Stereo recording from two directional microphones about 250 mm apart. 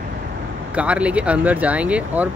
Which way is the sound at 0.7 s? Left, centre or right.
Centre.